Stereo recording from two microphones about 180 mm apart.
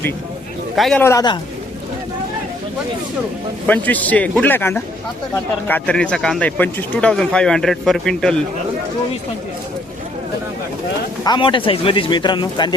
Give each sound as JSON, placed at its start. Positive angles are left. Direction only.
{"t": 0.8, "sound": "speech", "side_deg": 0}
{"t": 1.0, "sound": "speech", "side_deg": 20}
{"t": 3.7, "sound": "a man's voice", "side_deg": 10}
{"t": 11.2, "sound": "speech", "side_deg": 25}